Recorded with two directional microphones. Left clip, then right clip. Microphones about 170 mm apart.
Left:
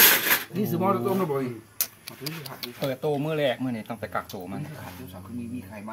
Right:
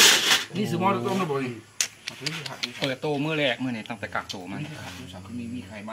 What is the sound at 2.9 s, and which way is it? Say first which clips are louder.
Speech: left 3 dB; 70° left (ahead or behind).